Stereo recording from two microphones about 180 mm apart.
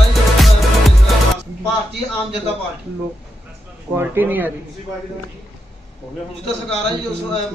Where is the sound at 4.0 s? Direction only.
10° right (ahead or behind).